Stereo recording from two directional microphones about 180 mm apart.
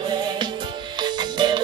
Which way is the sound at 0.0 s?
25° right (ahead or behind).